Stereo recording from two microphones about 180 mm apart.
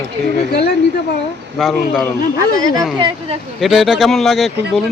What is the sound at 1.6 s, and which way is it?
Speech, centre (ahead or behind).